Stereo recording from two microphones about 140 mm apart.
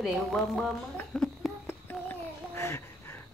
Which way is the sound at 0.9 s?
5° left (ahead or behind).